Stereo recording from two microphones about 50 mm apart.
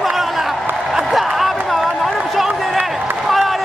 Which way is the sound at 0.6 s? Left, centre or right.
Right.